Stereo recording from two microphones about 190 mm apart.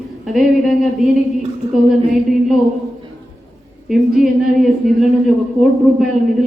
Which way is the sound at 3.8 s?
Centre (ahead or behind).